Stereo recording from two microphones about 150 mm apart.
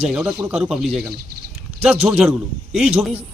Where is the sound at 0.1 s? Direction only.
5° right (ahead or behind).